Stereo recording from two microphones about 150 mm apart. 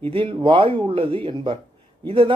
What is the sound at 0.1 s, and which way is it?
Speech, 35° right (ahead or behind).